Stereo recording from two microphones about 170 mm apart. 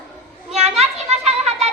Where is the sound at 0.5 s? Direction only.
40° right (ahead or behind).